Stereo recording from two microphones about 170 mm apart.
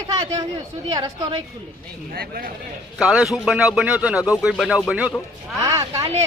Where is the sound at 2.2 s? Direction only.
60° right (ahead or behind).